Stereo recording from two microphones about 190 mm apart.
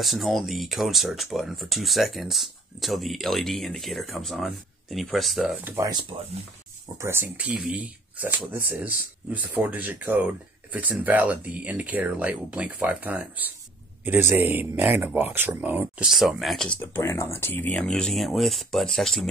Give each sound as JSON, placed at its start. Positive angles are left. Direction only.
{"t": 0.0, "sound": "speech", "side_deg": 0}
{"t": 5.9, "sound": "speech", "side_deg": -20}